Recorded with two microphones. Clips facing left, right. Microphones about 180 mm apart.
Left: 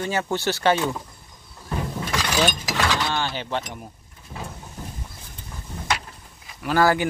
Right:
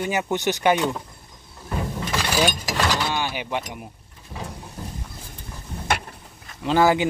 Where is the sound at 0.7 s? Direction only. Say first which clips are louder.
Right 1 dB; centre (ahead or behind).